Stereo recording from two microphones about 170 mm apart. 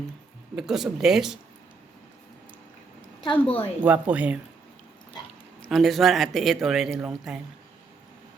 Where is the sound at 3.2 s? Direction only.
30° left (ahead or behind).